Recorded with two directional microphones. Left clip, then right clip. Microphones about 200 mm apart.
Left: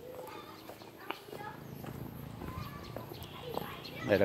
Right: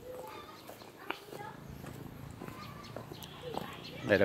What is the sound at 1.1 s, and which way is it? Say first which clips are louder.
Walk: right 1 dB; 20° right (ahead or behind).